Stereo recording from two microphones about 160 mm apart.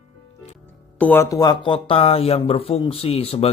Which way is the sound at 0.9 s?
10° left (ahead or behind).